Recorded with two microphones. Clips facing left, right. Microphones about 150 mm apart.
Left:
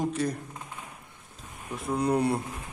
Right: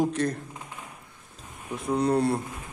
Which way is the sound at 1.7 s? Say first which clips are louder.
Right 2 dB; 5° left (ahead or behind).